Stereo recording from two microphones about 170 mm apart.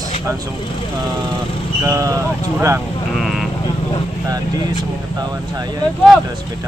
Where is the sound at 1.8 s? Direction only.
15° right (ahead or behind).